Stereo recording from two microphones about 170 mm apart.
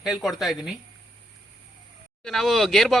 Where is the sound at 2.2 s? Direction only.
Centre (ahead or behind).